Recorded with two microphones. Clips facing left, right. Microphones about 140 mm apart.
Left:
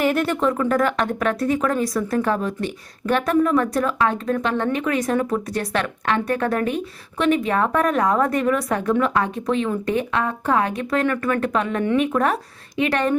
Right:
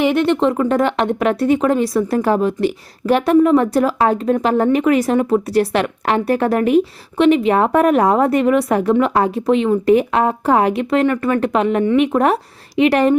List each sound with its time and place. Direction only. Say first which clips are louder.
0.3 s speech: right 5 dB; 30° right (ahead or behind)